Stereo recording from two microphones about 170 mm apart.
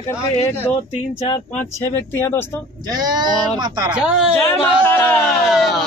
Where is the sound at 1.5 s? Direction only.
10° left (ahead or behind).